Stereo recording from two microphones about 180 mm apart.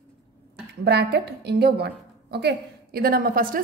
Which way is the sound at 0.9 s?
65° right (ahead or behind).